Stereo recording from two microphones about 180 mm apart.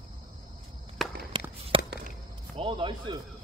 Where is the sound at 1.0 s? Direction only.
Centre (ahead or behind).